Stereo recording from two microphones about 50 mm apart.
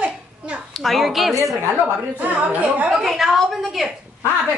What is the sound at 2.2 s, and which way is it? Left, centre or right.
Speech, right.